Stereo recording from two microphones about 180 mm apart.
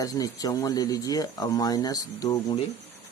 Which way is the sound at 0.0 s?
20° left (ahead or behind).